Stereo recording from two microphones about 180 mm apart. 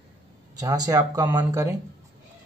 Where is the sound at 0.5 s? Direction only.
20° right (ahead or behind).